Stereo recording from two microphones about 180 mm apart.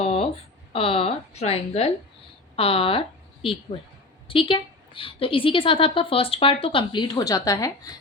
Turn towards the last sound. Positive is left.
turn(degrees=20)  # may be behind; listen again after turning